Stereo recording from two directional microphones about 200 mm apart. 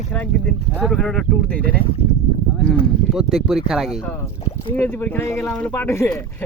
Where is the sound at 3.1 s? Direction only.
Centre (ahead or behind).